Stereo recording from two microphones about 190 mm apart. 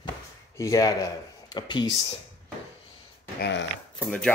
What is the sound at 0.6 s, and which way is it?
Speech, 15° left (ahead or behind).